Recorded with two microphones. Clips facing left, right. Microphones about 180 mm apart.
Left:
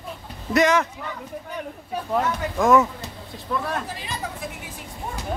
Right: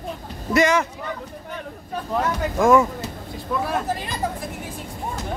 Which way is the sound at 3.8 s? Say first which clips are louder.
Right 8 dB; 50° right (ahead or behind).